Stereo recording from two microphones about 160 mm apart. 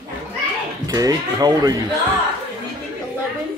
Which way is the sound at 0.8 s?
25° right (ahead or behind).